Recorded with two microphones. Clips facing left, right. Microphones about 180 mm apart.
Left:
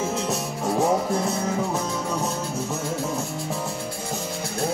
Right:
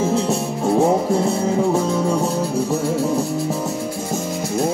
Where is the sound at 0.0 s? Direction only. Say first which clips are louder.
Right 7 dB; 30° right (ahead or behind).